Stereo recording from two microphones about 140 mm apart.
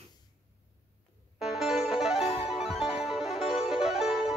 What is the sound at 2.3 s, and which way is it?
Music, 45° left (ahead or behind).